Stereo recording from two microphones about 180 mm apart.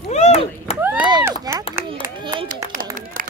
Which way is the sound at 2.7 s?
50° right (ahead or behind).